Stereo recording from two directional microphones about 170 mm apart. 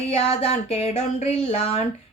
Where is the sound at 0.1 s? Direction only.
35° left (ahead or behind).